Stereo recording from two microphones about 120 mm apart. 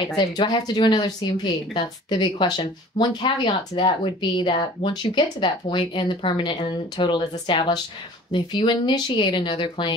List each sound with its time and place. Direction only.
0.0 s speech: 40° left (ahead or behind)